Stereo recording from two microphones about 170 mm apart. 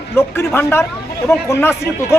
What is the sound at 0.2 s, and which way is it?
A man's voice, 15° left (ahead or behind).